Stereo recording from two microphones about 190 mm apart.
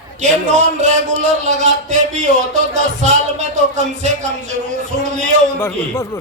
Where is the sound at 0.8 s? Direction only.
40° right (ahead or behind).